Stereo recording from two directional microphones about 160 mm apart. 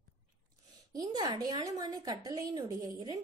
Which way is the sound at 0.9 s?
25° right (ahead or behind).